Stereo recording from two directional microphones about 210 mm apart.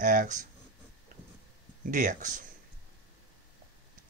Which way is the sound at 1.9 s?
35° right (ahead or behind).